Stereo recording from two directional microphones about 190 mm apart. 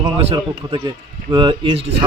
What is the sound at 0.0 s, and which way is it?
A man's voice, 25° right (ahead or behind).